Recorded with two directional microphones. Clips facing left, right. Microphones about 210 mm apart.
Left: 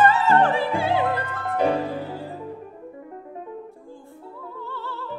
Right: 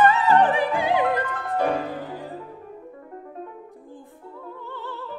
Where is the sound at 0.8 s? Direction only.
15° right (ahead or behind).